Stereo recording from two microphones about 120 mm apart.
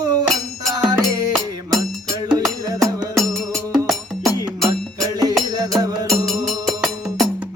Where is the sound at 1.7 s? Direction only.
30° right (ahead or behind).